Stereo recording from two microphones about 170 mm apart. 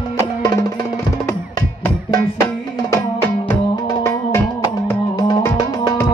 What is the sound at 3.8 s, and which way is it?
Music, 20° left (ahead or behind).